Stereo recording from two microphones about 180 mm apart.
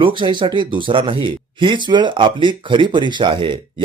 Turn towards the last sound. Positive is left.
turn(degrees=-25)  # may be behind; listen again after turning